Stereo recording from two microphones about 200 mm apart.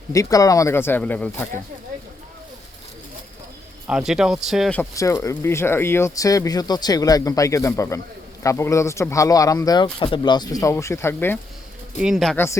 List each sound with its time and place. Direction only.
0.1 s speech: 15° left (ahead or behind)
3.8 s speech: 5° right (ahead or behind)
4.8 s speech: 15° left (ahead or behind)
12.0 s speech: centre (ahead or behind)